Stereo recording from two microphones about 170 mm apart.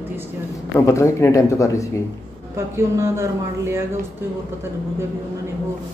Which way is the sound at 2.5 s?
15° right (ahead or behind).